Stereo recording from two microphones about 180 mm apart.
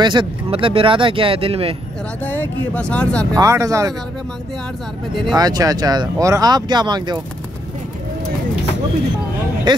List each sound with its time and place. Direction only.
0.0 s speech: 25° right (ahead or behind)
2.2 s speech: 10° left (ahead or behind)
3.3 s speech: 20° right (ahead or behind)
5.3 s speech: 20° right (ahead or behind)